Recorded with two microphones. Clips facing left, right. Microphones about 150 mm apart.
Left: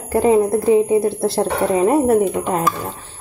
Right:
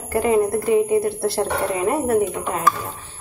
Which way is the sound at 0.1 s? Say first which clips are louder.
Left 4 dB; 30° left (ahead or behind).